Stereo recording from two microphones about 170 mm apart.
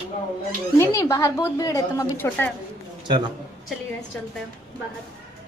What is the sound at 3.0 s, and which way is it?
Speech, 25° right (ahead or behind).